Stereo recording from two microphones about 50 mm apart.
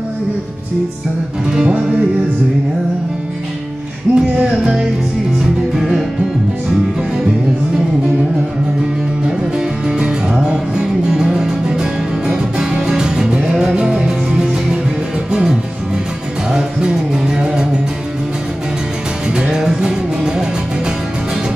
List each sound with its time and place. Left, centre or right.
1.5 s music: centre
4.1 s music: right
4.4 s music: centre
9.2 s music: centre
16.5 s music: centre
19.3 s music: centre